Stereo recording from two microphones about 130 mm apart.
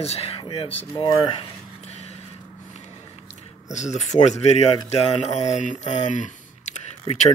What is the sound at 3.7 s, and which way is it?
Speech, 65° left (ahead or behind).